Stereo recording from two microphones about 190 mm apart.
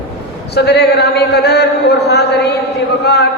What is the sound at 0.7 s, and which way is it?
A man's voice, 60° left (ahead or behind).